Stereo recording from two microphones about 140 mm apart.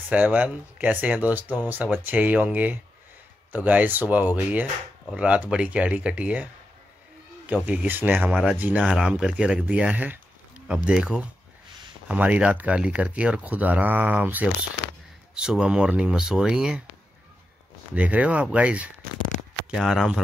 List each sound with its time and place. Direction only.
0.1 s speech: 10° right (ahead or behind)
17.9 s speech: 10° right (ahead or behind)